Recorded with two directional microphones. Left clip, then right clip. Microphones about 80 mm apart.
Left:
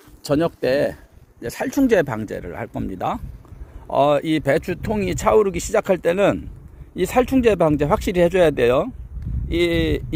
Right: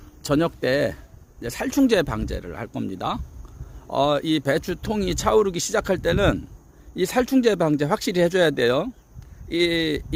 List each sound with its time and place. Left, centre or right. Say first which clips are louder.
0.3 s speech: left 2 dB; centre
2.7 s speech: left 2 dB; right
4.0 s speech: left 4 dB; centre
4.3 s speech: left 3 dB; centre
8.5 s speech: left 4 dB; right
9.6 s speech: left 2 dB; centre